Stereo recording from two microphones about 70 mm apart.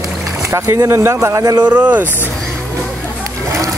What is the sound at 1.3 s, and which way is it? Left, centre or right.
Speech, right.